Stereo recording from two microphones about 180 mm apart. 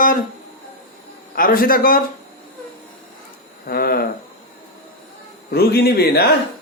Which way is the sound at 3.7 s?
55° left (ahead or behind).